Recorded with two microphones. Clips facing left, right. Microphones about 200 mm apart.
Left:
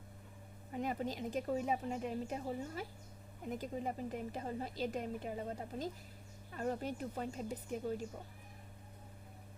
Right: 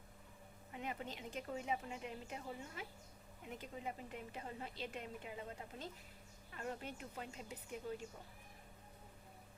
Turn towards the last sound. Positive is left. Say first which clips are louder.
# left 7 dB
turn(degrees=40)  # may be behind; listen again after turning